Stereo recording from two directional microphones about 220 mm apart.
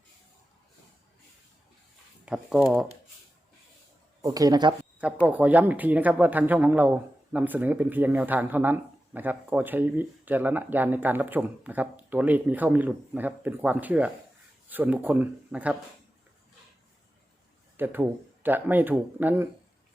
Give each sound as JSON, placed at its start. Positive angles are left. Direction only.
{"t": 2.2, "sound": "speech", "side_deg": -5}
{"t": 4.2, "sound": "speech", "side_deg": -15}
{"t": 4.9, "sound": "speech", "side_deg": -5}
{"t": 17.7, "sound": "speech", "side_deg": -10}